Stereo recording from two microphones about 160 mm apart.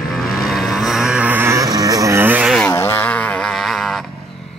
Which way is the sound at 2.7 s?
15° left (ahead or behind).